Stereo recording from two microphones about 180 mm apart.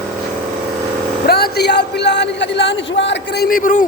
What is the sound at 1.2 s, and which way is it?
Speech, 60° left (ahead or behind).